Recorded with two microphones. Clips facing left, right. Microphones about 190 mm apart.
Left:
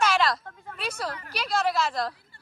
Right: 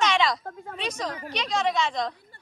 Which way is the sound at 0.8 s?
5° left (ahead or behind).